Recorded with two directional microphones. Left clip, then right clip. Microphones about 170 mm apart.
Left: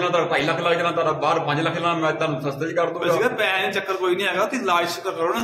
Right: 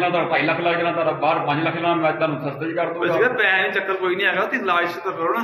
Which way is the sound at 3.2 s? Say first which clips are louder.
Right 3 dB; 90° left.